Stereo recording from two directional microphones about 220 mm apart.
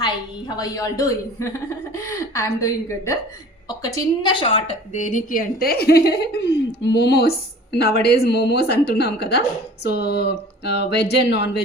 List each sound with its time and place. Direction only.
0.0 s a woman's voice: 20° left (ahead or behind)
3.7 s a woman's voice: 15° left (ahead or behind); by 11.6 s 50° left (ahead or behind)